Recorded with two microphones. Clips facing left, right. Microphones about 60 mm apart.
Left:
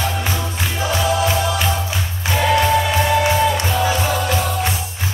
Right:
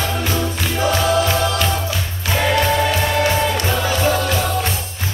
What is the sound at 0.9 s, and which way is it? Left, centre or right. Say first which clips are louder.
Music: left 1 dB; centre.